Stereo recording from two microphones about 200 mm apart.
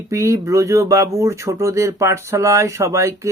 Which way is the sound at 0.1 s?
15° right (ahead or behind).